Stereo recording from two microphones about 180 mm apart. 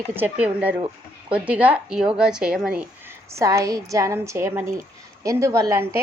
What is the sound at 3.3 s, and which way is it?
A woman's voice, 15° right (ahead or behind).